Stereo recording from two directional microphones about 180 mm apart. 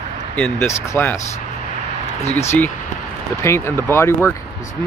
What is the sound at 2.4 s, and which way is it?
Speech, 15° left (ahead or behind).